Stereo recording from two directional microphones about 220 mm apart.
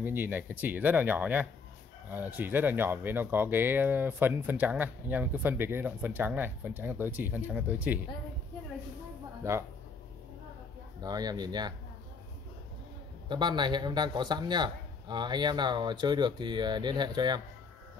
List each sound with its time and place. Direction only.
0.0 s speech: 10° right (ahead or behind)
9.4 s speech: 10° right (ahead or behind)
11.0 s a man's voice: 20° right (ahead or behind)
13.3 s a man's voice: 20° right (ahead or behind)